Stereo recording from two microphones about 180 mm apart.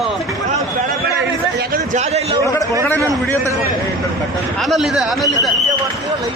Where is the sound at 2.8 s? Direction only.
10° left (ahead or behind).